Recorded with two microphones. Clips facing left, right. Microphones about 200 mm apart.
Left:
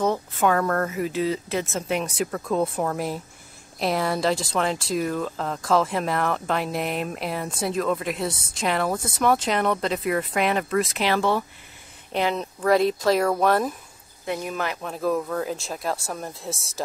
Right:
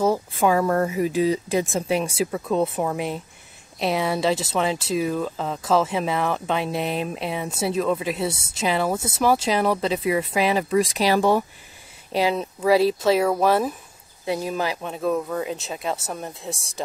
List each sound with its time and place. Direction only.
0.0 s speech: 10° right (ahead or behind)
14.2 s speech: 30° right (ahead or behind)
14.8 s speech: centre (ahead or behind)